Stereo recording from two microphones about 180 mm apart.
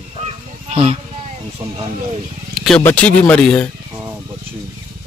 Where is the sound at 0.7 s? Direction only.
30° right (ahead or behind).